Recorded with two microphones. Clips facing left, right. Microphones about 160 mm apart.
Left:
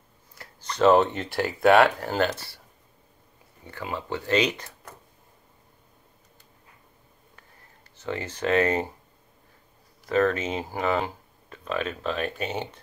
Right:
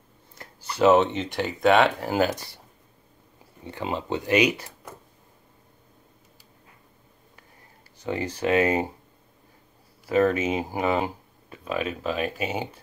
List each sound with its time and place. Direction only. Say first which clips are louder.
0.6 s speech: even; 10° right (ahead or behind)
2.0 s speech: right 2 dB; 5° right (ahead or behind)
3.6 s speech: right 4 dB; 20° right (ahead or behind)
8.0 s speech: right 2 dB; 15° right (ahead or behind)
10.0 s speech: right 2 dB; 10° right (ahead or behind)